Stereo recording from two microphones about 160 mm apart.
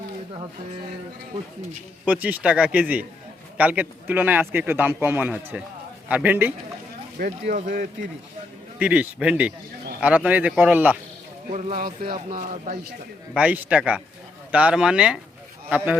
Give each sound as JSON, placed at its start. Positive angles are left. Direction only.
{"t": 2.0, "sound": "speech", "side_deg": -10}
{"t": 7.2, "sound": "speech", "side_deg": -60}
{"t": 8.8, "sound": "speech", "side_deg": -10}
{"t": 11.5, "sound": "speech", "side_deg": -60}
{"t": 11.9, "sound": "speech", "side_deg": -30}
{"t": 12.3, "sound": "speech", "side_deg": -55}
{"t": 13.3, "sound": "speech", "side_deg": -10}